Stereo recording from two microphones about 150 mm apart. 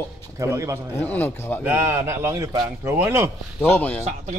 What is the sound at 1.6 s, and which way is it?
Speech, 15° right (ahead or behind).